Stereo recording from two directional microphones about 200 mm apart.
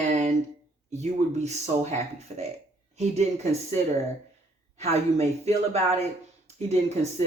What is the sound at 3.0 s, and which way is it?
Speech, 35° right (ahead or behind).